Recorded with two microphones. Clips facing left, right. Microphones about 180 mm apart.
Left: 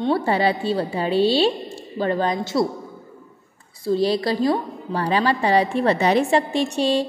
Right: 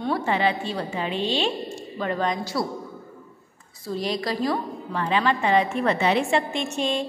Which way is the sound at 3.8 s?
30° left (ahead or behind).